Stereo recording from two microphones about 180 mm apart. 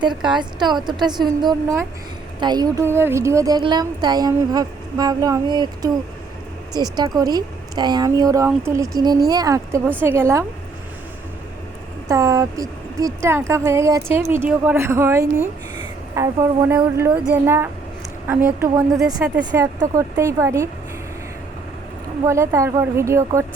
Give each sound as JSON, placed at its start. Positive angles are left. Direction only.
{"t": 0.0, "sound": "speech", "side_deg": -25}
{"t": 12.0, "sound": "speech", "side_deg": -20}
{"t": 22.3, "sound": "speech", "side_deg": -15}